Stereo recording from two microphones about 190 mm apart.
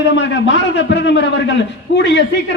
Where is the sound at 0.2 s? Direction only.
70° left (ahead or behind).